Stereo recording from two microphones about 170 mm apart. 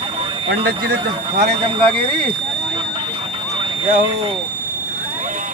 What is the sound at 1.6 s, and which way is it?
Speech, 30° right (ahead or behind).